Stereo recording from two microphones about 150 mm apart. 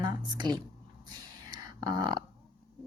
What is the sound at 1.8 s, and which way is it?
Speech, 25° right (ahead or behind).